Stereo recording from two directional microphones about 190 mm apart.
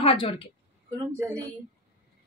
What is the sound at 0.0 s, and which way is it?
Speech, 30° left (ahead or behind).